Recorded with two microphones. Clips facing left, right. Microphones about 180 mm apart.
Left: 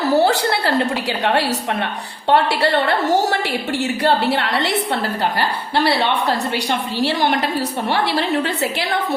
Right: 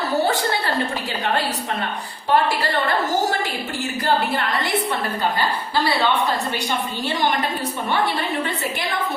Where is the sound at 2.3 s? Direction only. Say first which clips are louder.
Left 4 dB; 70° left (ahead or behind).